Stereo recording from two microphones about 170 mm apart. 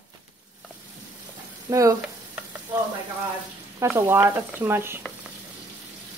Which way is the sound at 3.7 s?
15° right (ahead or behind).